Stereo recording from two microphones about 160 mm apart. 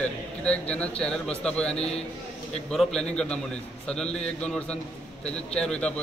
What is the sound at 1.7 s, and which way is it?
Speech, 40° left (ahead or behind).